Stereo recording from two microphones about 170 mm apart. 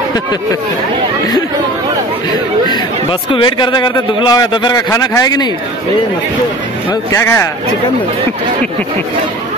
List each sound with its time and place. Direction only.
2.7 s a man's voice: 30° left (ahead or behind)
6.9 s speech: 15° left (ahead or behind)